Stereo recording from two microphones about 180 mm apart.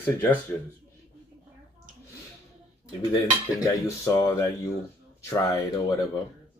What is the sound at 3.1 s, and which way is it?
Speech, 20° left (ahead or behind).